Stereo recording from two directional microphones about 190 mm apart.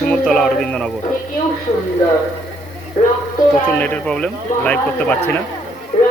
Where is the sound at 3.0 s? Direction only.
35° left (ahead or behind).